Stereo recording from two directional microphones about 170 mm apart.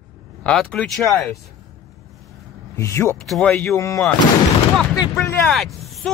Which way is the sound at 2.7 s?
15° left (ahead or behind).